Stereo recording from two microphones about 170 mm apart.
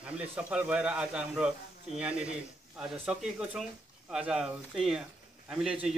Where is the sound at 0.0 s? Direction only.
5° right (ahead or behind).